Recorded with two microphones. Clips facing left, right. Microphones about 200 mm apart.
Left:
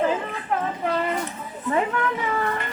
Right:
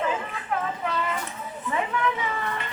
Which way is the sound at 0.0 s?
35° left (ahead or behind).